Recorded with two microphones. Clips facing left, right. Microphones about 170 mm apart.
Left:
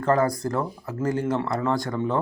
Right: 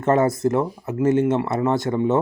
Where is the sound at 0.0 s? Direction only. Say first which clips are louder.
Right 4 dB; 25° right (ahead or behind).